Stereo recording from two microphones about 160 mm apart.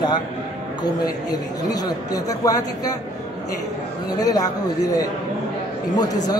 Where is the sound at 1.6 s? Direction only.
25° left (ahead or behind).